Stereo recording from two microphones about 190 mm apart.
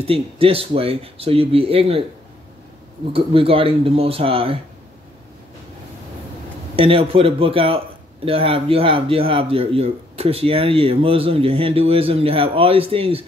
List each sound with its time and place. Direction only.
0.0 s speech: 30° right (ahead or behind)
3.1 s speech: 30° right (ahead or behind)
6.7 s speech: 30° right (ahead or behind)